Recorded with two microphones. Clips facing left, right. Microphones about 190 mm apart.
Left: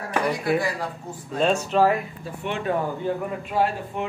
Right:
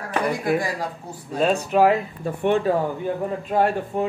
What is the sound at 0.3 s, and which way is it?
Speech, 50° right (ahead or behind).